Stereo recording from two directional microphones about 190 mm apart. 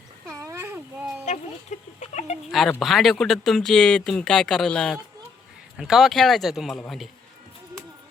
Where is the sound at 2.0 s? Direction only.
35° left (ahead or behind).